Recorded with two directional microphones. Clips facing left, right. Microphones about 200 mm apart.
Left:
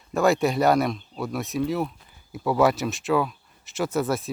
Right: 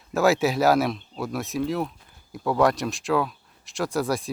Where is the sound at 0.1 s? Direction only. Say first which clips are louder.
Even; centre (ahead or behind).